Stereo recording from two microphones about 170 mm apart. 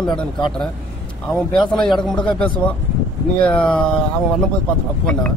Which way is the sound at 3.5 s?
30° left (ahead or behind).